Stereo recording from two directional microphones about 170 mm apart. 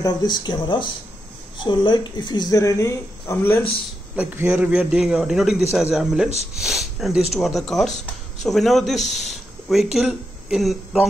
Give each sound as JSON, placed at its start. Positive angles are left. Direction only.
{"t": 0.0, "sound": "speech", "side_deg": 25}
{"t": 4.1, "sound": "a man's voice", "side_deg": -10}